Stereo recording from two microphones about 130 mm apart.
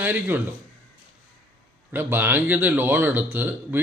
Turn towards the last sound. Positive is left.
turn(degrees=-15)  # may be behind; listen again after turning